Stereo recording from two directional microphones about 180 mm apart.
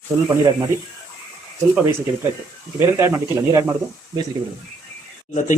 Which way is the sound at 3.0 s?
15° right (ahead or behind).